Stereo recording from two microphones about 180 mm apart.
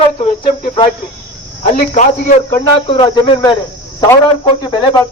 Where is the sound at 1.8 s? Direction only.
50° left (ahead or behind).